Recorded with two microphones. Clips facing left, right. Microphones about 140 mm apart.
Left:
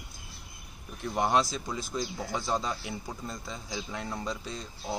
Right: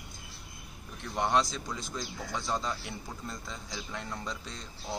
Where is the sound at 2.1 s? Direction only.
25° left (ahead or behind).